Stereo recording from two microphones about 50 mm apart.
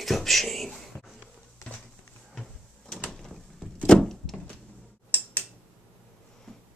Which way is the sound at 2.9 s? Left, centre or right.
Centre.